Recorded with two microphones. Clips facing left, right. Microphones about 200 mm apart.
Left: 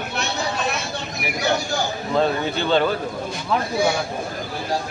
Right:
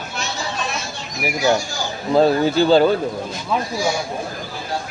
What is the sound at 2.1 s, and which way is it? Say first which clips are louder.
Speech: right 7 dB; 35° right (ahead or behind).